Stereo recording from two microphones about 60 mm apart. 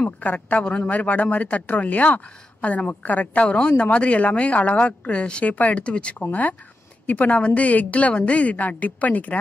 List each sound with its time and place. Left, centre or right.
0.0 s speech: left